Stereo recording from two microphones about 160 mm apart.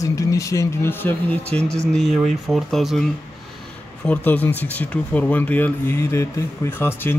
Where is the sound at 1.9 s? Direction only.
Centre (ahead or behind).